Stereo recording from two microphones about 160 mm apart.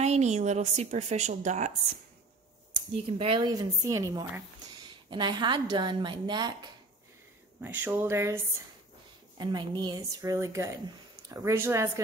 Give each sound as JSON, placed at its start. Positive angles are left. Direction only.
{"t": 0.0, "sound": "a woman's voice", "side_deg": -45}
{"t": 3.1, "sound": "speech", "side_deg": -35}
{"t": 3.8, "sound": "speech", "side_deg": -20}
{"t": 7.6, "sound": "speech", "side_deg": -10}
{"t": 9.4, "sound": "speech", "side_deg": -25}